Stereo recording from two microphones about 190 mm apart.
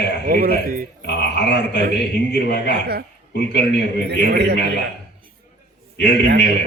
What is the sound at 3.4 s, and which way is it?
Speech, 65° left (ahead or behind).